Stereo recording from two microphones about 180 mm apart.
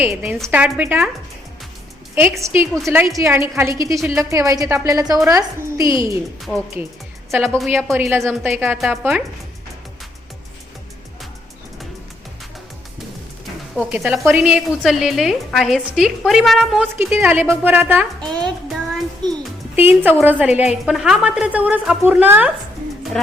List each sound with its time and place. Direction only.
0.0 s a woman's voice: 5° right (ahead or behind)
2.4 s a woman's voice: 15° right (ahead or behind)
6.4 s a woman's voice: centre (ahead or behind)
7.9 s a woman's voice: 10° right (ahead or behind)
13.7 s a woman's voice: 5° right (ahead or behind)
17.0 s a woman's voice: 10° right (ahead or behind)
18.3 s music: centre (ahead or behind)
19.7 s a woman's voice: 10° right (ahead or behind)
23.1 s a woman's voice: 5° left (ahead or behind)